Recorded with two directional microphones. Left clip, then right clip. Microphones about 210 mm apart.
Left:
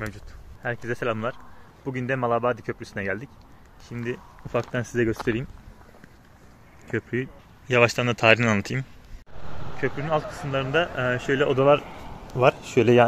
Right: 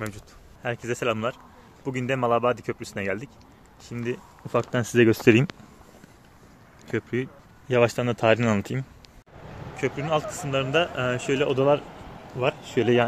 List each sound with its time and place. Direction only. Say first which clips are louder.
0.0 s speech: even; 10° right (ahead or behind); by 5.5 s 55° right (ahead or behind)
6.9 s speech: even; 5° right (ahead or behind); by 13.0 s 20° left (ahead or behind)